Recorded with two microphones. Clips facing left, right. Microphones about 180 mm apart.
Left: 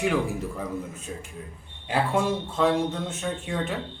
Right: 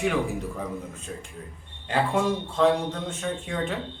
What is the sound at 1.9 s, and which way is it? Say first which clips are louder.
Speech: even; 5° left (ahead or behind).